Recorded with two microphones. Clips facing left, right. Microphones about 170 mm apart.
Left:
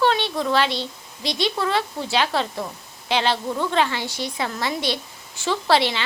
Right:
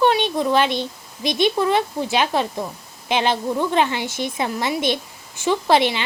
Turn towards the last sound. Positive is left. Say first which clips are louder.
# right 3 dB
turn(degrees=-15)  # may be behind; listen again after turning